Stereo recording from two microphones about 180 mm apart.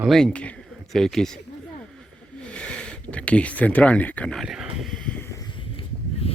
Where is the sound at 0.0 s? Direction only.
Centre (ahead or behind).